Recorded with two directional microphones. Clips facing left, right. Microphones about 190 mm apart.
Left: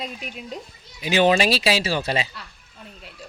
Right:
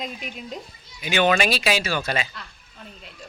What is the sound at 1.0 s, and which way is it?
Speech, 30° left (ahead or behind).